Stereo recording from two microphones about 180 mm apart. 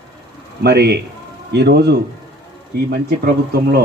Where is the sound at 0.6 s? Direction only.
65° right (ahead or behind).